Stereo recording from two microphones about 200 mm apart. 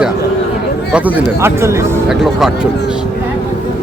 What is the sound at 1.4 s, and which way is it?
Speech, 15° right (ahead or behind).